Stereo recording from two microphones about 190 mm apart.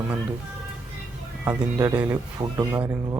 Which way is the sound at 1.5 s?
15° right (ahead or behind).